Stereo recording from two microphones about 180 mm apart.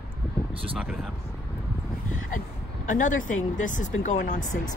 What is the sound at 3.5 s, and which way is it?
Speech, 45° left (ahead or behind).